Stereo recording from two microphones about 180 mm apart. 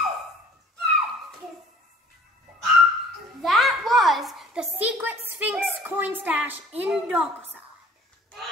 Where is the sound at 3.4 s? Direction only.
Centre (ahead or behind).